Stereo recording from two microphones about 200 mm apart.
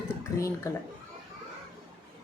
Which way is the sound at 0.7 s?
15° left (ahead or behind).